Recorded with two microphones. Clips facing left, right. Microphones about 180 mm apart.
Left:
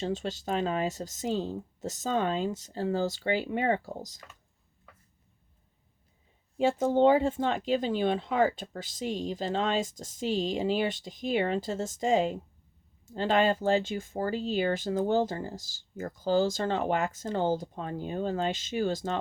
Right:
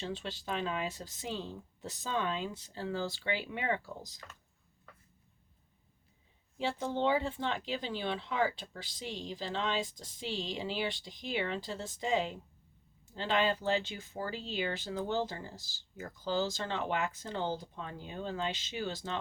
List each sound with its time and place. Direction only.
0.0 s speech: 45° left (ahead or behind)
6.6 s speech: 45° left (ahead or behind)